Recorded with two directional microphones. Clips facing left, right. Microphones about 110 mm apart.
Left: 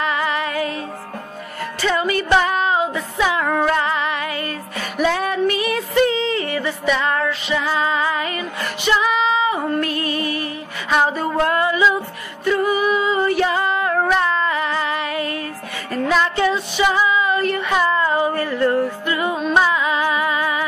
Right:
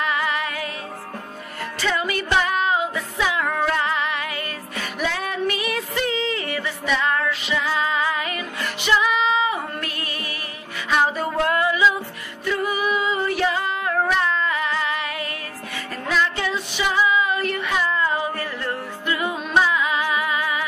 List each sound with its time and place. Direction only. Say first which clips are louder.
0.0 s music: left 3 dB; 30° left (ahead or behind)
1.9 s music: left 4 dB; 35° left (ahead or behind)
2.3 s a sound: left 3 dB; 35° left (ahead or behind)
3.2 s music: left 4 dB; 45° left (ahead or behind)
3.4 s music: left 4 dB; 20° left (ahead or behind)
3.8 s music: left 3 dB; 40° left (ahead or behind)
11.5 s music: even; 35° left (ahead or behind)
12.6 s music: left 4 dB; 5° right (ahead or behind)
12.9 s music: left 5 dB; 35° left (ahead or behind)